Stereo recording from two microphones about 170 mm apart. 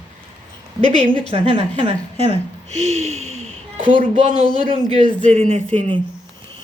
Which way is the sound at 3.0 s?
40° right (ahead or behind).